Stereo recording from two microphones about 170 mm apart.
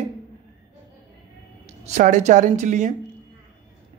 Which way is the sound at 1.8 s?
45° right (ahead or behind).